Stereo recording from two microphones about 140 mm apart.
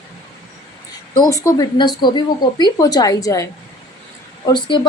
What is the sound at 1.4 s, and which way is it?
A woman's voice, 30° left (ahead or behind).